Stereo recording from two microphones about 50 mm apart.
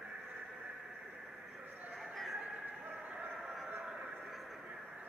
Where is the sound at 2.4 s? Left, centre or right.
Right.